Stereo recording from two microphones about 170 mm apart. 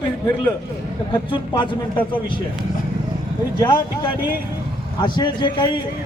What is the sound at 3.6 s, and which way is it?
A man's voice, 25° left (ahead or behind).